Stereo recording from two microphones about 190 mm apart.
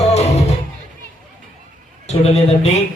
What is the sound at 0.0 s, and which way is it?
Music, 35° left (ahead or behind).